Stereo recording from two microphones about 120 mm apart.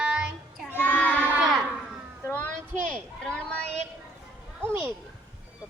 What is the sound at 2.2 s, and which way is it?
Speech, 15° left (ahead or behind).